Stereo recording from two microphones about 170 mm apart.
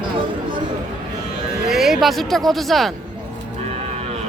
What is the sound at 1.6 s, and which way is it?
Music, centre (ahead or behind).